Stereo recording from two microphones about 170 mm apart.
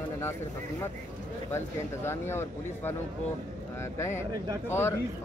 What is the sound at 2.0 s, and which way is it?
Speech, 15° left (ahead or behind).